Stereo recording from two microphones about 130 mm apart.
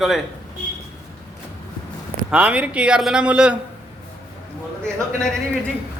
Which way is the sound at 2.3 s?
10° right (ahead or behind).